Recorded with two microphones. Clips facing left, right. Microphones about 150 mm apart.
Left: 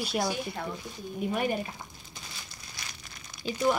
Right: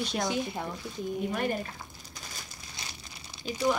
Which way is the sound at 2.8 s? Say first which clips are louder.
Right 1 dB; 20° right (ahead or behind).